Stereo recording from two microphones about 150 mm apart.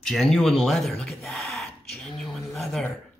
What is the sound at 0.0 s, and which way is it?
Speech, centre (ahead or behind).